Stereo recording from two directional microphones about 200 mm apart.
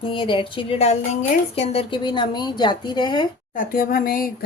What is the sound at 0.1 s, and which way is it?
A woman's voice, 25° left (ahead or behind).